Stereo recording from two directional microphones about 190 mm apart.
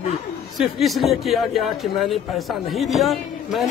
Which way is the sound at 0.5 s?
Centre (ahead or behind).